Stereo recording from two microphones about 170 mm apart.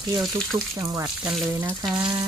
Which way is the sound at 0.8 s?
15° right (ahead or behind).